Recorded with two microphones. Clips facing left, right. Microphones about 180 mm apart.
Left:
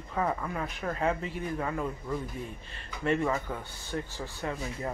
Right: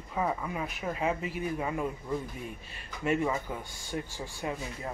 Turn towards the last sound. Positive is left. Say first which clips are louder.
# even
turn(degrees=-10)  # may be behind; listen again after turning